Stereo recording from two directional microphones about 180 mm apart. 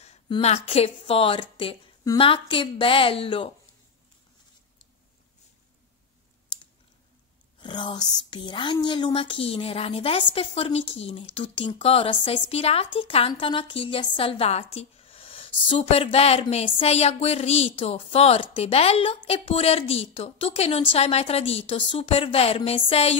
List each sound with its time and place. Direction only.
0.3 s a woman's voice: 35° left (ahead or behind)
7.6 s a woman's voice: 25° left (ahead or behind)